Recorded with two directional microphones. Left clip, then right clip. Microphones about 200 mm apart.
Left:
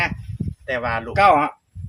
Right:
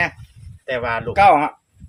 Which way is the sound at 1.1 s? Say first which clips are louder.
Right 2 dB; 15° right (ahead or behind).